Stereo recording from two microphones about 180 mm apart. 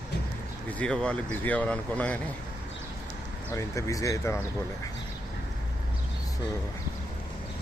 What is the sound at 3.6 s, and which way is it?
Speech, 15° left (ahead or behind).